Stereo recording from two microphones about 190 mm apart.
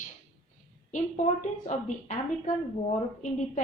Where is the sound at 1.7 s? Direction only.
40° left (ahead or behind).